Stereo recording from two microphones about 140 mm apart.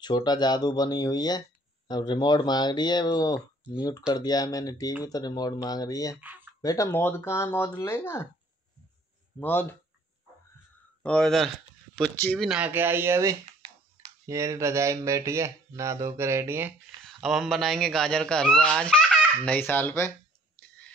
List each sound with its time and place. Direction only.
0.0 s speech: 30° left (ahead or behind)
6.2 s a sound: 10° right (ahead or behind)
6.6 s speech: 25° left (ahead or behind)
6.9 s speech: 15° left (ahead or behind)
9.4 s speech: 15° left (ahead or behind)
11.0 s speech: 5° left (ahead or behind); by 16.7 s 15° right (ahead or behind)
17.0 s speech: centre (ahead or behind); by 20.1 s 15° left (ahead or behind)